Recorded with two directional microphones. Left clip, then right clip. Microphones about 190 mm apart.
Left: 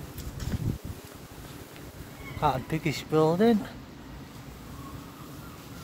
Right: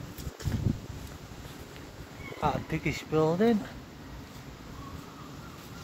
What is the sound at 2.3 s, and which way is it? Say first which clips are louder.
Speech: left 3 dB; 15° left (ahead or behind).